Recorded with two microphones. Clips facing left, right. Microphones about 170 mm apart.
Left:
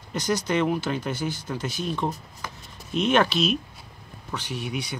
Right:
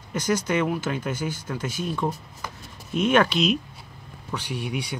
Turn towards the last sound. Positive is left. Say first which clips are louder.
# right 1 dB
turn(degrees=-10)  # may be behind; listen again after turning